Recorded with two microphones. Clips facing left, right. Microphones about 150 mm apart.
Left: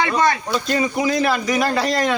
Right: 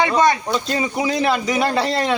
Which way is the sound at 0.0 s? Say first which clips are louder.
Right 2 dB; 20° right (ahead or behind).